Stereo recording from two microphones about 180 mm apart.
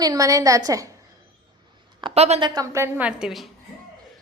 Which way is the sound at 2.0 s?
35° right (ahead or behind).